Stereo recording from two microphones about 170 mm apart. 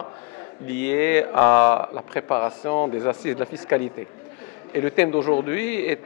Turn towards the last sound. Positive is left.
turn(degrees=10)  # may be behind; listen again after turning